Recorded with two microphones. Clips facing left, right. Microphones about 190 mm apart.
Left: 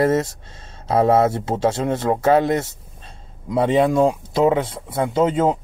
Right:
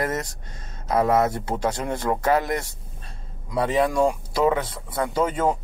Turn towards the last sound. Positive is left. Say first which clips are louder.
# left 5 dB
turn(degrees=25)  # may be behind; listen again after turning